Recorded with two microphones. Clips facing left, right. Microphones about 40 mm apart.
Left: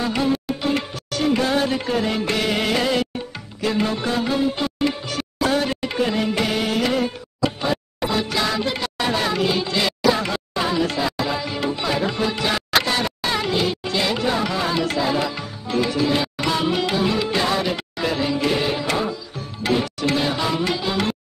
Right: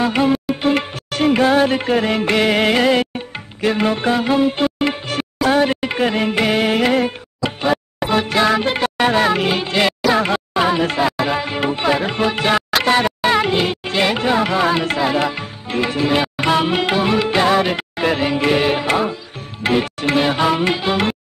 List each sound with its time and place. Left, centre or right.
0.0 s music: right
12.8 s speech: right
19.6 s music: right